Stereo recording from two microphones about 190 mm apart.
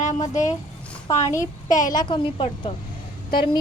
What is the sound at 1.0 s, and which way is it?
A woman's voice, 15° left (ahead or behind).